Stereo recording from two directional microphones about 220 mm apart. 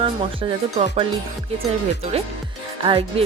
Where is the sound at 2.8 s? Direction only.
25° right (ahead or behind).